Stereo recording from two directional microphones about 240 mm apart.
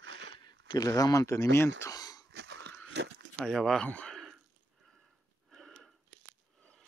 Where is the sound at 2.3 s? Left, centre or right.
Right.